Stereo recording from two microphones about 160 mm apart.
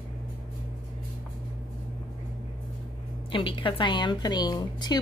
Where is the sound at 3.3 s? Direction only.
30° left (ahead or behind).